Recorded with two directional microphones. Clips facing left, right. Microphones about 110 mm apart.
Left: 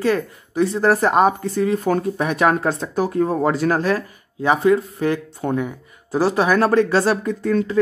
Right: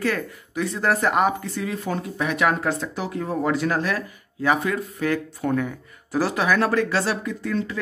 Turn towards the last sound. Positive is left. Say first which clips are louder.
# left 6 dB
turn(degrees=40)  # may be behind; listen again after turning